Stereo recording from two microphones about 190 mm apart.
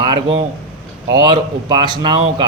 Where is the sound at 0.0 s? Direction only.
25° right (ahead or behind).